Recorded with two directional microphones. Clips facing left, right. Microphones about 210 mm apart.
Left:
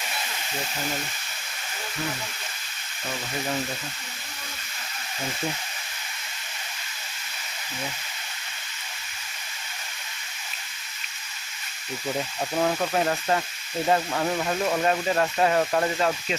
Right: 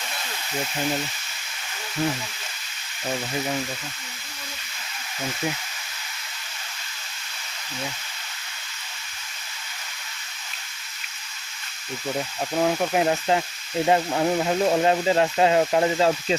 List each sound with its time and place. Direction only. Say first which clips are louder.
12.5 s speech: right 2 dB; 10° right (ahead or behind); by 16.4 s 25° right (ahead or behind)